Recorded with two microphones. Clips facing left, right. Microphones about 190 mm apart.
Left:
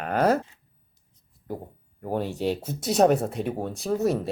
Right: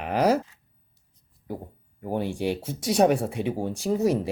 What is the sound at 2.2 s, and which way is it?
Speech, 10° right (ahead or behind).